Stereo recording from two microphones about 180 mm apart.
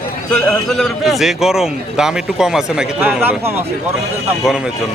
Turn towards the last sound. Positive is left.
turn(degrees=-5)  # may be behind; listen again after turning